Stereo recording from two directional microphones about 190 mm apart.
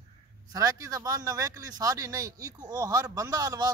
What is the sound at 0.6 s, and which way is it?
Speech, 20° right (ahead or behind).